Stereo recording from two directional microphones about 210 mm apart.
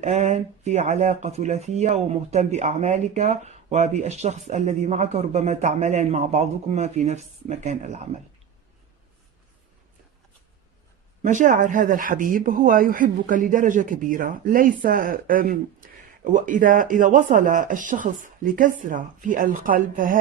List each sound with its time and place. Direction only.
0.0 s speech: 35° right (ahead or behind)
11.2 s speech: 35° right (ahead or behind)